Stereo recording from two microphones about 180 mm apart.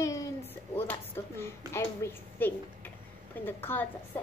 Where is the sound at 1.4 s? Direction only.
15° left (ahead or behind).